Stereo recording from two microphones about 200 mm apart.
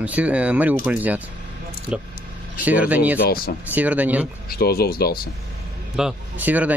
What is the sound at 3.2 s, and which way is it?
Speech, 50° left (ahead or behind).